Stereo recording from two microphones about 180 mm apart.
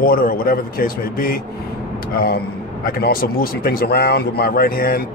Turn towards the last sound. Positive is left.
turn(degrees=55)  # may be behind; listen again after turning